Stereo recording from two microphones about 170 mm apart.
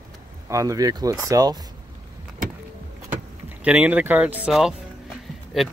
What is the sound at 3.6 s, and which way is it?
Speech, 10° right (ahead or behind).